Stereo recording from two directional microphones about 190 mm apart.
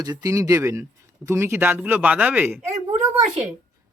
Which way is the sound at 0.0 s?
20° right (ahead or behind).